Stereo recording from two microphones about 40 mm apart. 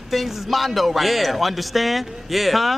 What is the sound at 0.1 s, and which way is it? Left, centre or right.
Speech, centre.